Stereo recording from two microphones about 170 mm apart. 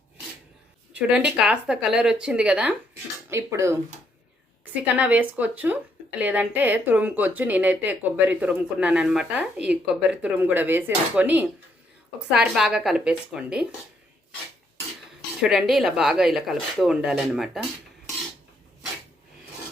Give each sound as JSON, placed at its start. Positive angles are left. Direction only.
{"t": 0.9, "sound": "speech", "side_deg": -5}
{"t": 3.2, "sound": "a woman's voice", "side_deg": -15}
{"t": 15.4, "sound": "speech", "side_deg": 0}